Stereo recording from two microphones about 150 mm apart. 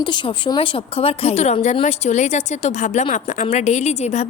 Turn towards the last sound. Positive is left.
turn(degrees=50)  # may be behind; listen again after turning